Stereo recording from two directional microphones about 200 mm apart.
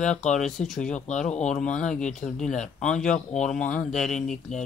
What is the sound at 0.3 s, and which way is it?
Speech, 5° left (ahead or behind).